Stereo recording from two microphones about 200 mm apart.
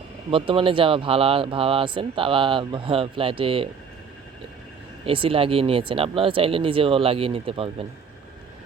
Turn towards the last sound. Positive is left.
turn(degrees=-30)  # may be behind; listen again after turning